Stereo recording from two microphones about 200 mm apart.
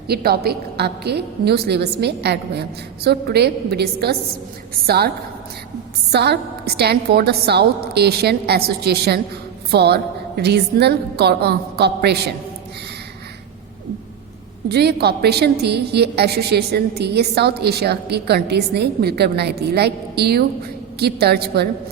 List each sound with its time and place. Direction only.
0.1 s a woman's voice: 50° right (ahead or behind)
14.7 s a woman's voice: 55° right (ahead or behind)